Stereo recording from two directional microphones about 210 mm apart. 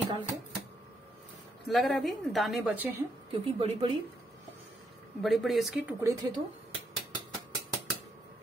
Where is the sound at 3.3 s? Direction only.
25° right (ahead or behind).